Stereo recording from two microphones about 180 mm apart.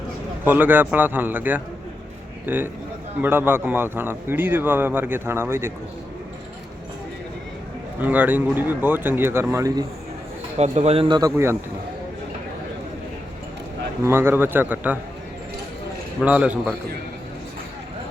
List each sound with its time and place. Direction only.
0.4 s speech: 10° right (ahead or behind)
8.0 s speech: 10° right (ahead or behind)
10.6 s speech: 35° right (ahead or behind)
14.0 s speech: 15° right (ahead or behind)
16.2 s speech: 5° right (ahead or behind)